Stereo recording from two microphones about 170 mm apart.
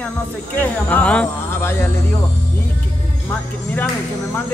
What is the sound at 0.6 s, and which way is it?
Speech, 10° left (ahead or behind).